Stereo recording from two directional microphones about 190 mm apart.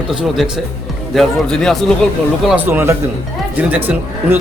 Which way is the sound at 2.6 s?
10° right (ahead or behind).